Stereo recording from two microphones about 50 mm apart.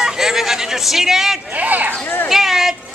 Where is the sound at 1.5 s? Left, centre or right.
Right.